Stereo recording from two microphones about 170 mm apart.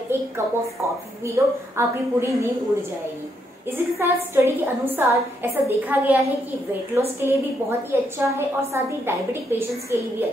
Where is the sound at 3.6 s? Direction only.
15° right (ahead or behind).